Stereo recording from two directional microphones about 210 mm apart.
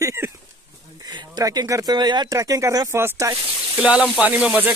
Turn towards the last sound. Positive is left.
turn(degrees=-5)  # may be behind; listen again after turning